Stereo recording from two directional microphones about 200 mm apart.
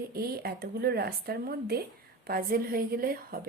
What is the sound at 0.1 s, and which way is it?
Speech, 50° right (ahead or behind).